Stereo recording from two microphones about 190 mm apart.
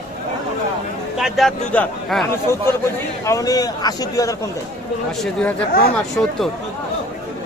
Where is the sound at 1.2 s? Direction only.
Centre (ahead or behind).